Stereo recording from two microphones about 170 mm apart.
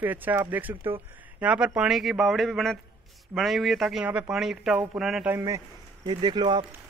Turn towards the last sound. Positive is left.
turn(degrees=-25)  # may be behind; listen again after turning